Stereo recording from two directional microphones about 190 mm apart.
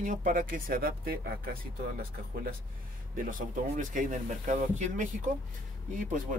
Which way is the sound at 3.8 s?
45° right (ahead or behind).